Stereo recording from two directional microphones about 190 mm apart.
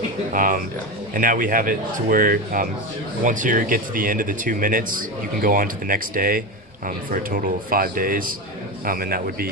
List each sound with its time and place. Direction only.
0.3 s speech: 45° right (ahead or behind)